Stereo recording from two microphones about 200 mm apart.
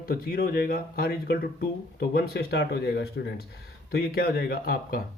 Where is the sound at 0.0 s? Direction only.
45° left (ahead or behind).